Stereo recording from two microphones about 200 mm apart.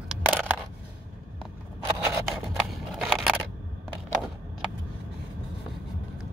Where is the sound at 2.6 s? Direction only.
Centre (ahead or behind).